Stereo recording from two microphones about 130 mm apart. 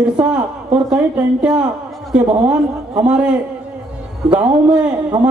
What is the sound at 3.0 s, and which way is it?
A man's voice, 10° right (ahead or behind).